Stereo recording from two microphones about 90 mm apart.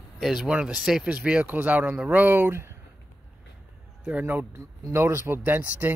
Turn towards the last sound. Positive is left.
turn(degrees=-20)  # may be behind; listen again after turning